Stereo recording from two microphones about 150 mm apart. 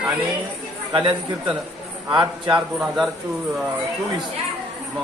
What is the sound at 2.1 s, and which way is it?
Speech, 25° right (ahead or behind).